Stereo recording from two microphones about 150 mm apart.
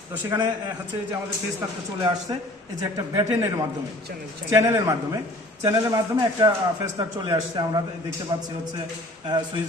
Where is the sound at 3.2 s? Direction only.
25° right (ahead or behind).